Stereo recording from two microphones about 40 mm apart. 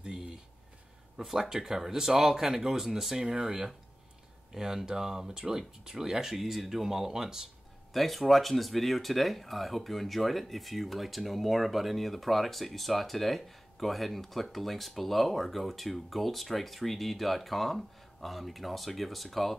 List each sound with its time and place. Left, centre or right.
0.0 s a sound: centre
1.1 s speech: centre
7.9 s speech: centre